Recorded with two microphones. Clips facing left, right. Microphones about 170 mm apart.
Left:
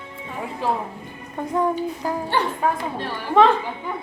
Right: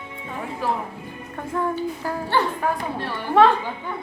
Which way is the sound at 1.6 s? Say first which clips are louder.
Left 2 dB; 15° left (ahead or behind).